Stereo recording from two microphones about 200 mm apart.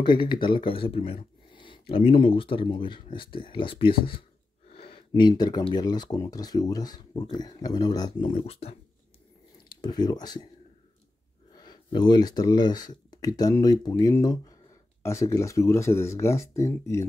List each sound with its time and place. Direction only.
0.0 s speech: 25° left (ahead or behind)
11.5 s speech: 20° left (ahead or behind)